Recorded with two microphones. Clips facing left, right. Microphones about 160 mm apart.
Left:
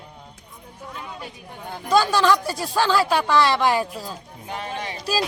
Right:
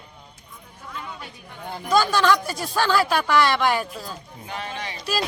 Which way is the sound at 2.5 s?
30° left (ahead or behind).